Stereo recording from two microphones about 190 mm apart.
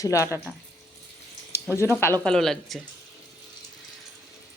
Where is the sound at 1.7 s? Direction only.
15° left (ahead or behind).